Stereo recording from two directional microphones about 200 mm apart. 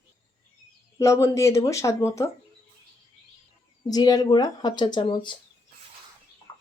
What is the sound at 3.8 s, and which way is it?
Speech, 20° left (ahead or behind).